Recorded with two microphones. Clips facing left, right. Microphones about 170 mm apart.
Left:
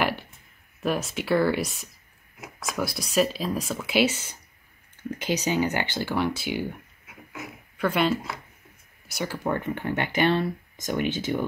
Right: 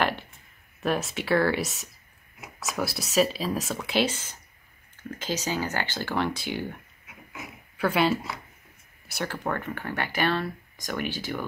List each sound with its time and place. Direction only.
0.8 s speech: centre (ahead or behind)
7.7 s speech: 5° right (ahead or behind)
9.0 s speech: centre (ahead or behind)
9.5 s speech: 20° left (ahead or behind)